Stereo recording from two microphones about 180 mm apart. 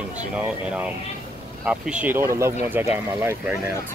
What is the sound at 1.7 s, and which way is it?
Speech, 5° right (ahead or behind).